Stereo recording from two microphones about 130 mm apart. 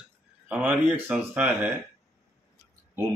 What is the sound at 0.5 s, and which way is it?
Speech, 10° right (ahead or behind).